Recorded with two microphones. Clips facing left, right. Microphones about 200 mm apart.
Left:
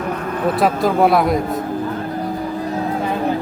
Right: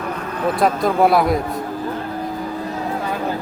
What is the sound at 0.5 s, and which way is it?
A man's voice, centre (ahead or behind).